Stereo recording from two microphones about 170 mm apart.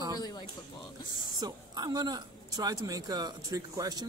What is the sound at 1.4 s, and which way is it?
Speech, 25° right (ahead or behind).